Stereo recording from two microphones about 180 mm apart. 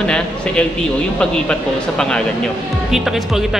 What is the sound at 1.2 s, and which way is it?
Speech, 5° left (ahead or behind).